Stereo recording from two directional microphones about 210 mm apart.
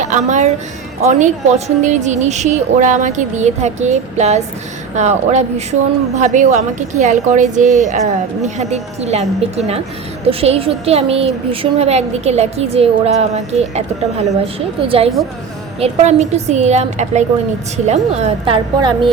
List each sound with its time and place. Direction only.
0.0 s a woman's voice: 35° right (ahead or behind)